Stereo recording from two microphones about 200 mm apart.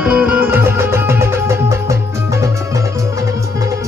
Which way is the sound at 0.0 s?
5° right (ahead or behind).